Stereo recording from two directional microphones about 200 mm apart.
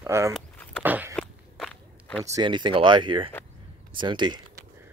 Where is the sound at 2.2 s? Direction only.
20° right (ahead or behind).